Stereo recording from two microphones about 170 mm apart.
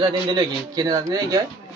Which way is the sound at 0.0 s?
25° right (ahead or behind).